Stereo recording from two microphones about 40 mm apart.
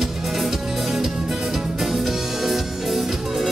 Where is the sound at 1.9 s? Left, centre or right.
Centre.